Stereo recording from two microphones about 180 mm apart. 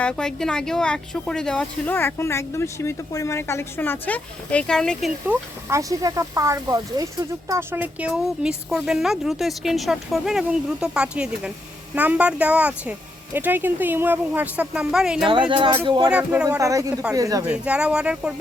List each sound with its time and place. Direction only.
0.0 s speech: 5° left (ahead or behind)
5.6 s speech: 15° right (ahead or behind)
15.3 s speech: 25° right (ahead or behind)
16.0 s speech: 5° right (ahead or behind)
16.6 s speech: 20° right (ahead or behind)
17.5 s speech: 5° right (ahead or behind)